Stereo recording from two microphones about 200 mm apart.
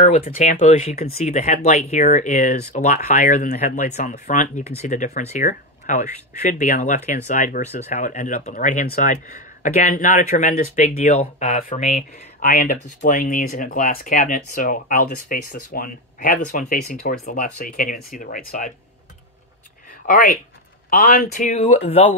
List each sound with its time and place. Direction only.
0.0 s speech: 40° left (ahead or behind)
20.1 s speech: 40° left (ahead or behind)